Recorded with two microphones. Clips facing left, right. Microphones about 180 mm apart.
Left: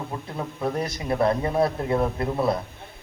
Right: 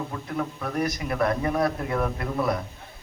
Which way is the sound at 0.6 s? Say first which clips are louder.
Left 1 dB; 25° left (ahead or behind).